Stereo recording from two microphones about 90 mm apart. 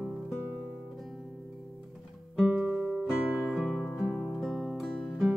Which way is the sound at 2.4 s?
20° right (ahead or behind).